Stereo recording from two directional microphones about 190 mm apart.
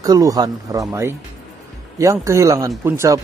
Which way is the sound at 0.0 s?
20° right (ahead or behind).